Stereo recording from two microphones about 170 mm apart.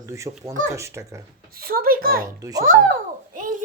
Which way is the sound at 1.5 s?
60° right (ahead or behind).